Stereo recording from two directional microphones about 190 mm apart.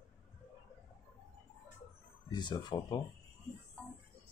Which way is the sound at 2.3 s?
25° left (ahead or behind).